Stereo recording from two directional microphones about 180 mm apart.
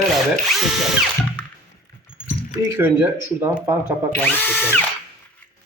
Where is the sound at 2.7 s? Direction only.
15° right (ahead or behind).